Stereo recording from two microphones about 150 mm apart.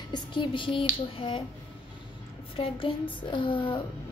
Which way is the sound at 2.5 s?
35° left (ahead or behind).